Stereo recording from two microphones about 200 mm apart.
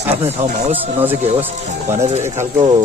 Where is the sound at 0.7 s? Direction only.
10° right (ahead or behind).